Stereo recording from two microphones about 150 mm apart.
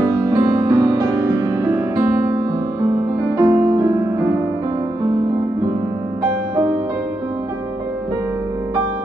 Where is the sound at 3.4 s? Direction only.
20° right (ahead or behind).